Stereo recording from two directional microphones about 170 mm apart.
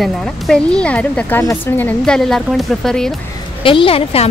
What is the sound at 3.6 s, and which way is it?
Speech, 30° left (ahead or behind).